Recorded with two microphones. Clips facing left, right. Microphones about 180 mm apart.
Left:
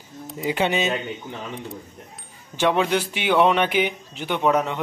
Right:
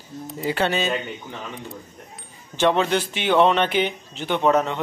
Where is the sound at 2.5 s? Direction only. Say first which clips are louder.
Right 1 dB; 10° left (ahead or behind).